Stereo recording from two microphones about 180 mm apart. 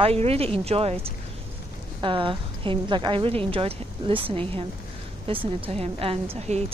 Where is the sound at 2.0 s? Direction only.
30° right (ahead or behind).